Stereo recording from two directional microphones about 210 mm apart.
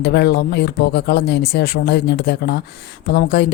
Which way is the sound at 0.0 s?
50° left (ahead or behind).